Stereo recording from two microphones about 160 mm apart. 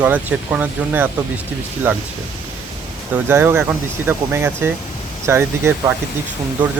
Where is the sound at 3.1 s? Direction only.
15° right (ahead or behind).